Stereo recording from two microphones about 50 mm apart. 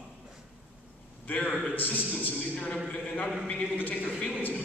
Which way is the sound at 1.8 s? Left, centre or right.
Left.